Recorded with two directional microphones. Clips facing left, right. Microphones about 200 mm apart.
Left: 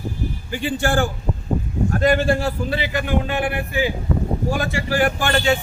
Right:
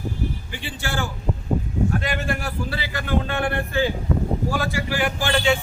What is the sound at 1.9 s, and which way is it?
A man's voice, 40° left (ahead or behind).